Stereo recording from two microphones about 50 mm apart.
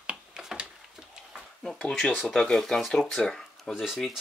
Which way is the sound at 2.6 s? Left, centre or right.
Centre.